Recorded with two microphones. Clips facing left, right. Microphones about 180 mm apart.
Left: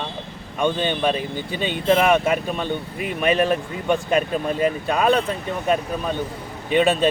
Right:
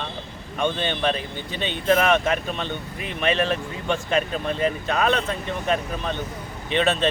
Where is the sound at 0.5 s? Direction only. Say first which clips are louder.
Left 3 dB; 10° left (ahead or behind).